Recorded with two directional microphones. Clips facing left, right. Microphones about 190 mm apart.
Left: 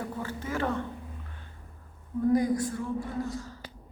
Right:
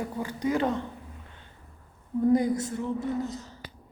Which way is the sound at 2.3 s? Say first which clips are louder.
Even; 25° right (ahead or behind).